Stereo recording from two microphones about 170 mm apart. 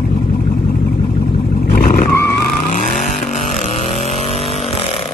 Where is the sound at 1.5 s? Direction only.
70° left (ahead or behind).